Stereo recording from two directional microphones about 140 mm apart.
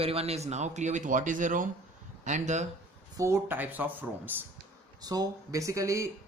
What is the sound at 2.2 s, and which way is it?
Speech, 60° right (ahead or behind).